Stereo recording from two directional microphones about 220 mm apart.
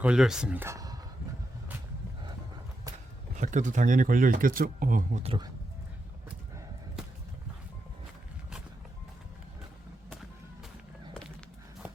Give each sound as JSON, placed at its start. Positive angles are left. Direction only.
{"t": 0.0, "sound": "speech", "side_deg": -5}
{"t": 3.3, "sound": "speech", "side_deg": -35}
{"t": 11.1, "sound": "walk", "side_deg": 5}